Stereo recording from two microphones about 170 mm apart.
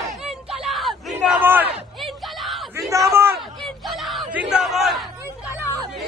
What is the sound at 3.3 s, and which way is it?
Crowd, centre (ahead or behind).